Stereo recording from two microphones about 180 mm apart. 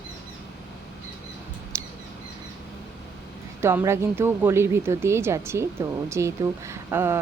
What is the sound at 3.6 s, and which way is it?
Speech, 15° right (ahead or behind).